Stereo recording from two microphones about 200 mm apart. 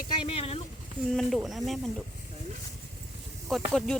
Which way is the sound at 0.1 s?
25° left (ahead or behind).